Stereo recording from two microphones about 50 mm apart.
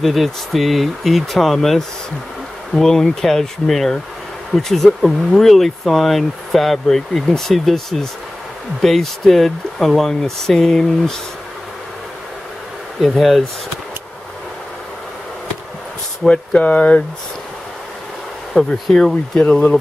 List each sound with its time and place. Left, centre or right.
0.0 s speech: centre
13.1 s speech: centre
16.3 s speech: left
18.6 s speech: left
18.9 s speech: centre